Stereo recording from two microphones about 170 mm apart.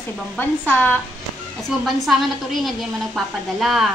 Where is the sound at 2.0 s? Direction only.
Centre (ahead or behind).